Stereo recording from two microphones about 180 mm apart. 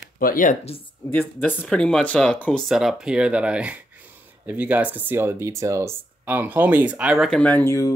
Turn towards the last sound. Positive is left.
turn(degrees=15)  # may be behind; listen again after turning